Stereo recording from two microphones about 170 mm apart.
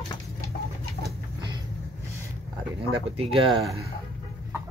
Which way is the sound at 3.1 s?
35° right (ahead or behind).